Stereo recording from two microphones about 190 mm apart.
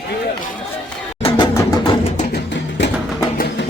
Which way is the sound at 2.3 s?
70° left (ahead or behind).